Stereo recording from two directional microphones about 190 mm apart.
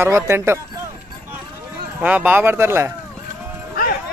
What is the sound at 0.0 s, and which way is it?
Speech, 15° right (ahead or behind).